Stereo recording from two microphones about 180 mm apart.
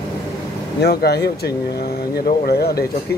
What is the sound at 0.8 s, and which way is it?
Speech, 65° left (ahead or behind).